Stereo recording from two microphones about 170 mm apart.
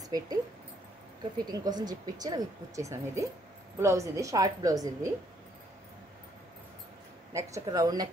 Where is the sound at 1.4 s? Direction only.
25° right (ahead or behind).